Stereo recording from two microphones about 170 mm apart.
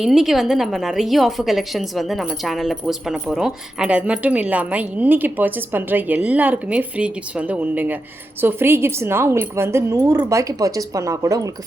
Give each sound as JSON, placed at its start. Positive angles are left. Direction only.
{"t": 0.0, "sound": "a woman's voice", "side_deg": 0}